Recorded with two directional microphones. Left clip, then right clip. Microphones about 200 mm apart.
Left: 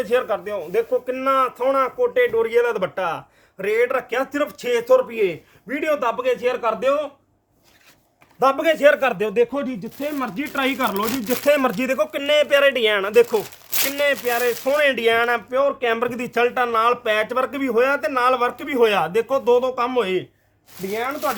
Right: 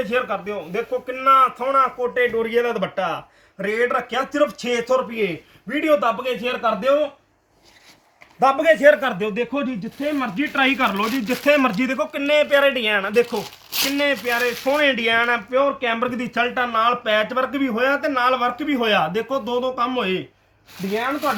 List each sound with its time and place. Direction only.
0.0 s a man's voice: 55° left (ahead or behind)
5.7 s a man's voice: 85° left
6.4 s speech: 35° left (ahead or behind)
8.4 s speech: 50° left (ahead or behind)